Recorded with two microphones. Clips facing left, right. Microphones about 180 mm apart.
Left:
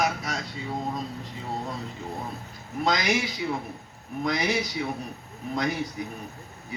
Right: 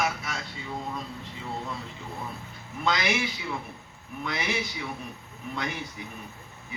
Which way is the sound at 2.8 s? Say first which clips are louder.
Left 2 dB; 40° left (ahead or behind).